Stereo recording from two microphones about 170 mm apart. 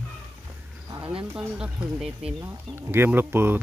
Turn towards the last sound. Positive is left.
turn(degrees=-10)  # may be behind; listen again after turning